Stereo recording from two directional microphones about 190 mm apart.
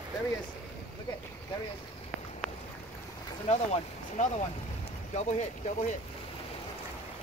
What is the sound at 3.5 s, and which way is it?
Speech, 35° left (ahead or behind).